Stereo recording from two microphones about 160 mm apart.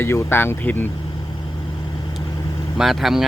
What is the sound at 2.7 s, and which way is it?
Speech, centre (ahead or behind).